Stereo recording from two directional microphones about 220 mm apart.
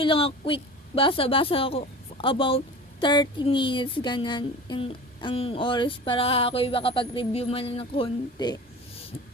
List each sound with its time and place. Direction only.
0.0 s speech: 25° left (ahead or behind)